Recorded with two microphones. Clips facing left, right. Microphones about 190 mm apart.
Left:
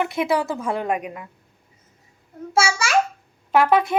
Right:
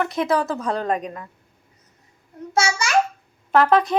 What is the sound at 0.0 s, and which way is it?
Speech, 15° left (ahead or behind).